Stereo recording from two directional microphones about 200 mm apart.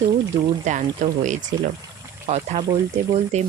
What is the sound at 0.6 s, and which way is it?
Speech, 40° right (ahead or behind).